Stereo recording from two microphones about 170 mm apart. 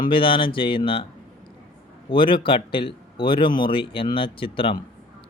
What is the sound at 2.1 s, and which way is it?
Speech, 30° left (ahead or behind).